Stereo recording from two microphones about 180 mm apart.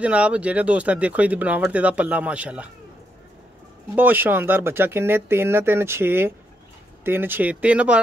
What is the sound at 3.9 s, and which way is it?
Speech, 10° right (ahead or behind).